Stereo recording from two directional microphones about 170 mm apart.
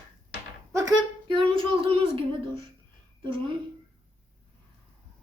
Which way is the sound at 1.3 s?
30° right (ahead or behind).